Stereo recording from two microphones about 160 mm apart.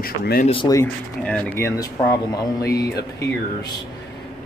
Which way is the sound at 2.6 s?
85° left.